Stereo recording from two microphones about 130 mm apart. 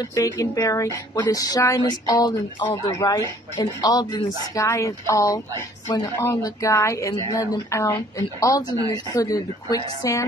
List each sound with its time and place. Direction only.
0.0 s a woman's voice: 25° left (ahead or behind)
8.7 s speech: 30° right (ahead or behind)
9.1 s a woman's voice: 30° left (ahead or behind)